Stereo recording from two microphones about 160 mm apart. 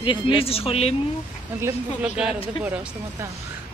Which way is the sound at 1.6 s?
10° right (ahead or behind).